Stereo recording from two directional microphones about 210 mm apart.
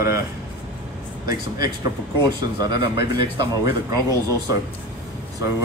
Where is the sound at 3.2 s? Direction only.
25° right (ahead or behind).